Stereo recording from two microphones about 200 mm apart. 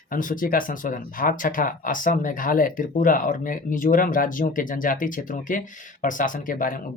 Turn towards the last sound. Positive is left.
turn(degrees=45)  # may be behind; listen again after turning